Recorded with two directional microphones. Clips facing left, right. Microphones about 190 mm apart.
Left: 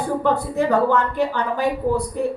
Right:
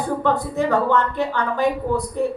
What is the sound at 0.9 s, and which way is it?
A woman's voice, 10° left (ahead or behind).